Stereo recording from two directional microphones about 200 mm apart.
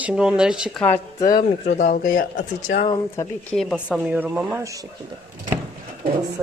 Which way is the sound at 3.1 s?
15° left (ahead or behind).